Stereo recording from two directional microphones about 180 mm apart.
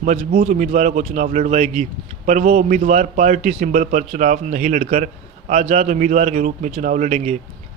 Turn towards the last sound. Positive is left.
turn(degrees=-40)  # may be behind; listen again after turning